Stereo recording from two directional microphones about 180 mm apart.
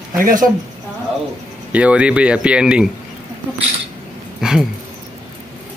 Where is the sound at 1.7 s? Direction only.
5° right (ahead or behind).